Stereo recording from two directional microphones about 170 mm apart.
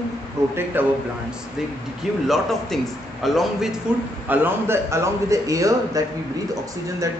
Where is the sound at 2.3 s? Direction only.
Centre (ahead or behind).